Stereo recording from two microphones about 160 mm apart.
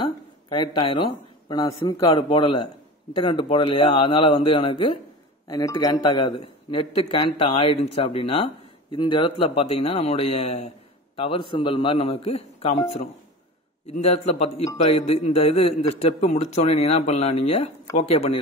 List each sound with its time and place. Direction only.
0.0 s a man's voice: 30° left (ahead or behind)
14.1 s a man's voice: 45° left (ahead or behind)